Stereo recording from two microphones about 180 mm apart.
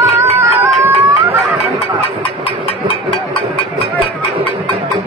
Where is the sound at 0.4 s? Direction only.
10° right (ahead or behind).